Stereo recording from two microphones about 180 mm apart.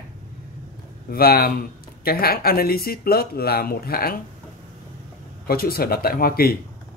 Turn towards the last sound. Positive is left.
turn(degrees=55)  # may be behind; listen again after turning